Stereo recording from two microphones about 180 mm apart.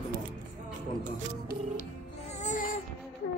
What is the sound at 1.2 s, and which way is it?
Speech, 45° right (ahead or behind).